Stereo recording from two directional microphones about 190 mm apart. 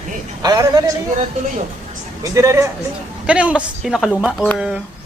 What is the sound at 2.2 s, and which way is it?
A man's voice, 15° right (ahead or behind).